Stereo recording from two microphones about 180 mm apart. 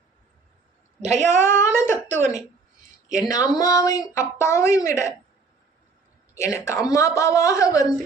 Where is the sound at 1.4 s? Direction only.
15° left (ahead or behind).